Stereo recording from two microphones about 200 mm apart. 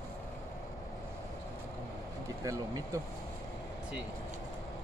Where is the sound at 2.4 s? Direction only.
15° right (ahead or behind).